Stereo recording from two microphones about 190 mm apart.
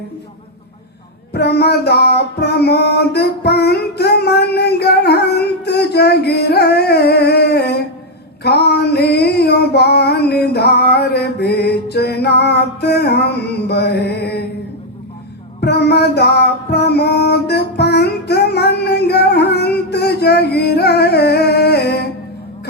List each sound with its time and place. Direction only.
1.3 s music: 60° left (ahead or behind)
8.4 s female singing: 60° left (ahead or behind)
15.6 s music: 60° left (ahead or behind)